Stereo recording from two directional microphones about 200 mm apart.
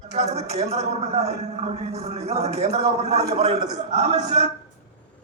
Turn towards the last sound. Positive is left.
turn(degrees=-35)  # may be behind; listen again after turning